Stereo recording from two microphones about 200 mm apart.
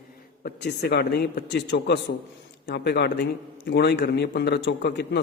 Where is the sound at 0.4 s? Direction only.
55° left (ahead or behind).